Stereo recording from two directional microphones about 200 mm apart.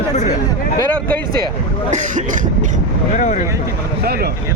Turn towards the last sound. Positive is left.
turn(degrees=35)  # may be behind; listen again after turning